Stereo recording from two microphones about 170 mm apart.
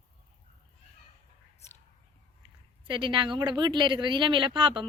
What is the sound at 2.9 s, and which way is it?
Speech, 30° right (ahead or behind).